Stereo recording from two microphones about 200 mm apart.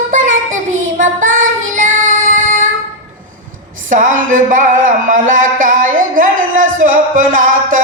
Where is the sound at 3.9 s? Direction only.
40° right (ahead or behind).